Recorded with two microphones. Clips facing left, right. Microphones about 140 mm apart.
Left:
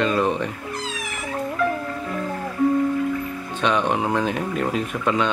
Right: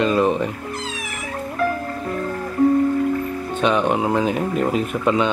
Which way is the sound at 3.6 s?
5° right (ahead or behind).